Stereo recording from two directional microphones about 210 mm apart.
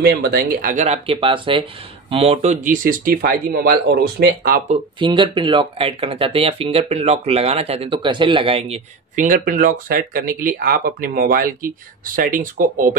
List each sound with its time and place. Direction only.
0.0 s speech: 45° right (ahead or behind)
4.6 s speech: 25° right (ahead or behind); by 12.9 s 40° right (ahead or behind)